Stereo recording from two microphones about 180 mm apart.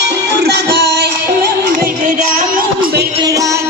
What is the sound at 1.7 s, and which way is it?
Music, 50° right (ahead or behind).